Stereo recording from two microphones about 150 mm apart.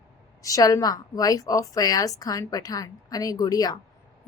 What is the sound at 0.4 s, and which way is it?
A woman's voice, 25° left (ahead or behind).